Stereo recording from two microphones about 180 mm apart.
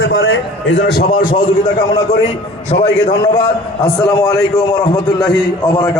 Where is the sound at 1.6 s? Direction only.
20° left (ahead or behind).